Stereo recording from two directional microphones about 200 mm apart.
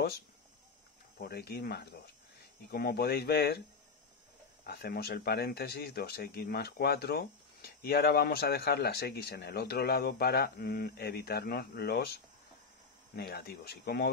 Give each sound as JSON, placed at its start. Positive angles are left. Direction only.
{"t": 1.1, "sound": "speech", "side_deg": 50}
{"t": 4.6, "sound": "speech", "side_deg": 50}